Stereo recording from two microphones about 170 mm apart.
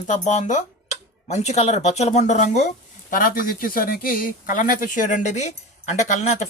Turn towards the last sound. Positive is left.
turn(degrees=40)  # may be behind; listen again after turning